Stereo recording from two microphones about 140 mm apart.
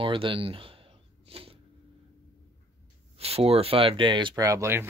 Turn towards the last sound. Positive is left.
turn(degrees=-20)  # may be behind; listen again after turning